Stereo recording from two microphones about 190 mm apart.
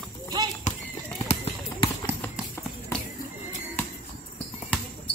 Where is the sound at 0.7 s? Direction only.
40° left (ahead or behind).